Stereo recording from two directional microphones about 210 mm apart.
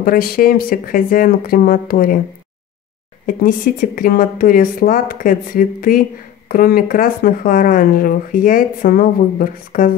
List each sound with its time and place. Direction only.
0.0 s speech: 45° left (ahead or behind)
3.3 s speech: 40° left (ahead or behind)